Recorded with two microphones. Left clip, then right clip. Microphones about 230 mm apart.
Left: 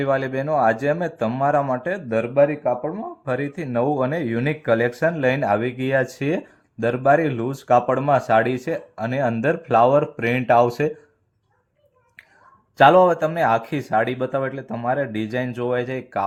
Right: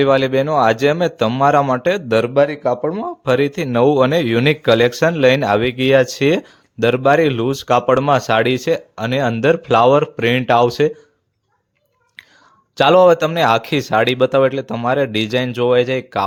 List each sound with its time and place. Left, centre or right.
0.0 s speech: right
2.9 s speech: right
12.7 s speech: right